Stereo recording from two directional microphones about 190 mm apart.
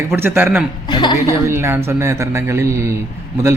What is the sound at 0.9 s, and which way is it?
Speech, 25° left (ahead or behind).